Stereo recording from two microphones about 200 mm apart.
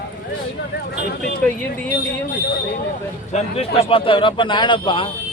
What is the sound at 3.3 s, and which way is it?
A man's voice, 35° left (ahead or behind).